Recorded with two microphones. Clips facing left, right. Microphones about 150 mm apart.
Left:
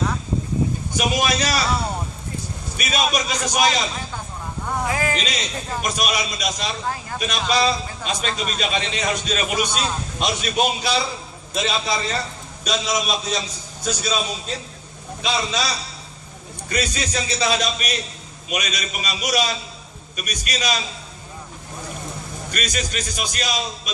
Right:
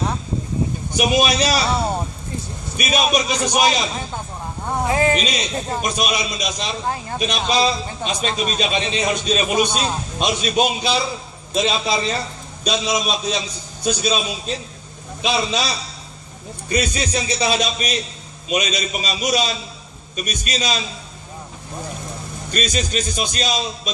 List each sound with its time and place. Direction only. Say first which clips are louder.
0.9 s a man's voice: right 5 dB; 20° right (ahead or behind)
2.8 s a man's voice: right 3 dB; 20° right (ahead or behind)
15.2 s a man's voice: right 3 dB; 20° right (ahead or behind)
22.5 s a man's voice: right 5 dB; 25° right (ahead or behind)